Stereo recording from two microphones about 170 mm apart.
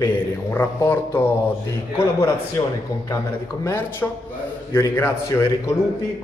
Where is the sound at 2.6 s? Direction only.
20° left (ahead or behind).